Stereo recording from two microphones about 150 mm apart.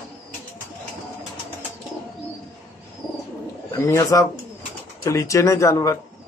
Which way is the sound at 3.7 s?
25° left (ahead or behind).